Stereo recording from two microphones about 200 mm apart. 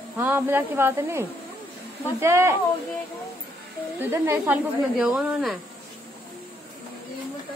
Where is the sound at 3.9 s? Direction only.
15° right (ahead or behind).